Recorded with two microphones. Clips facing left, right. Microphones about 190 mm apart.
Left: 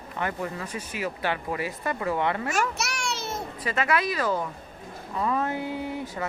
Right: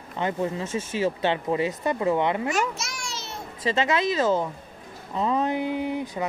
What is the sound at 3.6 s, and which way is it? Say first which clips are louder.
Speech: right 3 dB; 25° right (ahead or behind).